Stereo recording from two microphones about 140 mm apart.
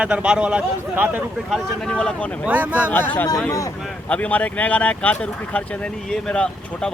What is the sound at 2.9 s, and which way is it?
Speech, 15° left (ahead or behind).